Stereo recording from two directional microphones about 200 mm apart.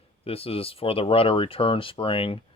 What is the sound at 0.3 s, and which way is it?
Speech, 30° left (ahead or behind).